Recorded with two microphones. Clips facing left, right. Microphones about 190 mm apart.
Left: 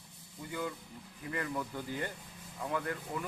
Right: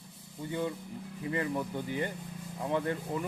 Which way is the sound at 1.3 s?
20° right (ahead or behind).